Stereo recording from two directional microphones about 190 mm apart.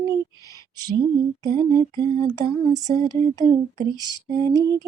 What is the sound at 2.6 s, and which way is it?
Lullaby, 20° right (ahead or behind).